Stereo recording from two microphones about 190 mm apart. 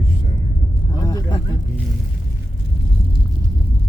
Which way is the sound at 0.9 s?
20° left (ahead or behind).